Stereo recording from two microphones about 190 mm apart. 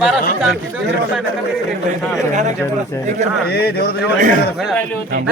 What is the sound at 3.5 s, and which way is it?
Speech, 55° left (ahead or behind).